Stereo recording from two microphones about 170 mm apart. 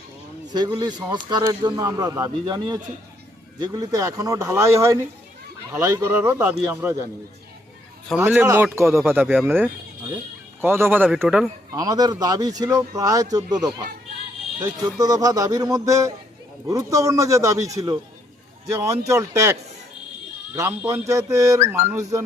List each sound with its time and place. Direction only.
0.5 s a man's voice: 25° right (ahead or behind)
8.2 s a man's voice: 15° right (ahead or behind)
11.7 s a man's voice: 20° right (ahead or behind)
20.6 s a man's voice: 15° right (ahead or behind)